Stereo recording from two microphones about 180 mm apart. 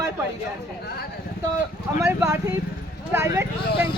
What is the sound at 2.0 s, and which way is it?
Speech, 15° right (ahead or behind).